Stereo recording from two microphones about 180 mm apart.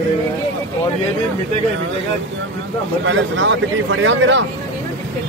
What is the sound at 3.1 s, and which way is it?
Speech, 90° right.